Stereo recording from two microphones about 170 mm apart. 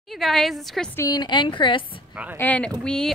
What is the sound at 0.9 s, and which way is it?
Speech, 20° left (ahead or behind).